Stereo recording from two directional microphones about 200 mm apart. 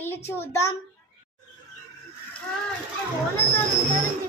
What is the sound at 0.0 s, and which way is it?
Speech, 10° left (ahead or behind).